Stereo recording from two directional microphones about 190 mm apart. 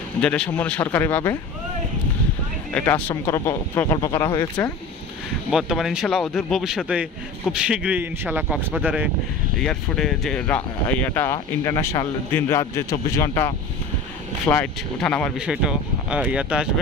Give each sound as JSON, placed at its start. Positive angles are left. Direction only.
{"t": 0.2, "sound": "a man's voice", "side_deg": 5}
{"t": 2.7, "sound": "a man's voice", "side_deg": 10}
{"t": 5.5, "sound": "a man's voice", "side_deg": 0}
{"t": 14.5, "sound": "a man's voice", "side_deg": 5}
{"t": 15.3, "sound": "speech", "side_deg": -5}